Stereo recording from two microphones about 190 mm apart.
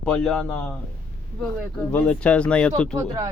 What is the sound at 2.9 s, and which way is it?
Speech, 15° right (ahead or behind).